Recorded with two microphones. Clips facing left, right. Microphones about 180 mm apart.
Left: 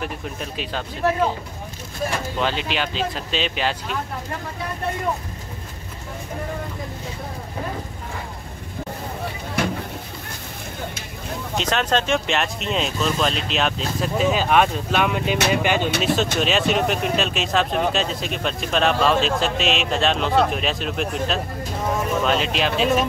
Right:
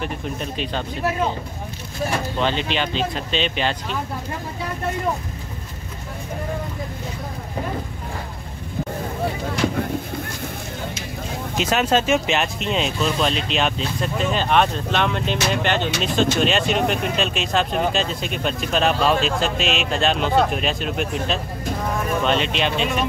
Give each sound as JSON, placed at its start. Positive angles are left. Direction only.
{"t": 0.0, "sound": "speech", "side_deg": 5}
{"t": 2.3, "sound": "speech", "side_deg": 5}
{"t": 11.5, "sound": "speech", "side_deg": -5}